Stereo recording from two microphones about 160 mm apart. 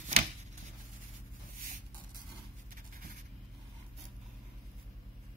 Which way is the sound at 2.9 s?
60° right (ahead or behind).